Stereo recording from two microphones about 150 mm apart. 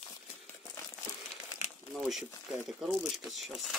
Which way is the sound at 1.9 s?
5° right (ahead or behind).